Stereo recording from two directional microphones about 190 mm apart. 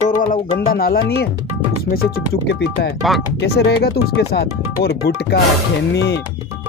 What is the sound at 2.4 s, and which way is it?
Speech, 65° left (ahead or behind).